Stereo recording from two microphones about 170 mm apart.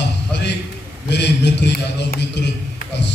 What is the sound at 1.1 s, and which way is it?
A man's voice, 90° left.